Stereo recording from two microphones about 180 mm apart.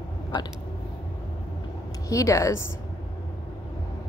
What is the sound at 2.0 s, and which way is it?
Speech, 15° left (ahead or behind).